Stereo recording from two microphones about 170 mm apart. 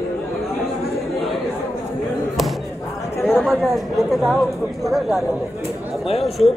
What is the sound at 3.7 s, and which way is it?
Speech, centre (ahead or behind).